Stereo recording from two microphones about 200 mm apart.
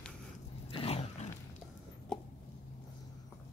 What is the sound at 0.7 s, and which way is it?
Dog, 25° left (ahead or behind).